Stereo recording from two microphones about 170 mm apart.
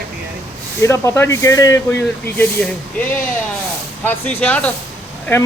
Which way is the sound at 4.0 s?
10° left (ahead or behind).